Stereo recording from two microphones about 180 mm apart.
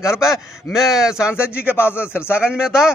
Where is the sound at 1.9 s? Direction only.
10° left (ahead or behind).